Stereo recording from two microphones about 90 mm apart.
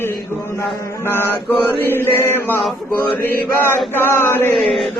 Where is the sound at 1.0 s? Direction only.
25° left (ahead or behind).